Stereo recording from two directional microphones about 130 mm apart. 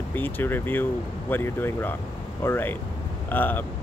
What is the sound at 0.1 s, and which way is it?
Speech, 15° left (ahead or behind).